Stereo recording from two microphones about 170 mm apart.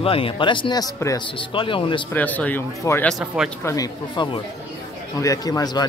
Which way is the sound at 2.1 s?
10° left (ahead or behind).